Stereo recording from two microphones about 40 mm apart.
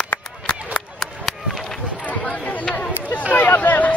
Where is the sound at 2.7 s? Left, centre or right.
Left.